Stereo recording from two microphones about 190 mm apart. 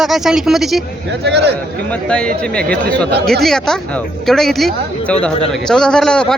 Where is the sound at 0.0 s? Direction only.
Centre (ahead or behind).